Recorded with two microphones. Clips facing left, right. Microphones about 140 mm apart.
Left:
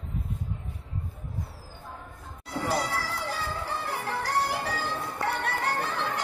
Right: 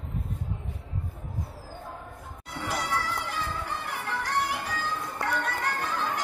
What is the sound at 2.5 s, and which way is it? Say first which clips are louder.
Children playing: left 2 dB; 35° left (ahead or behind).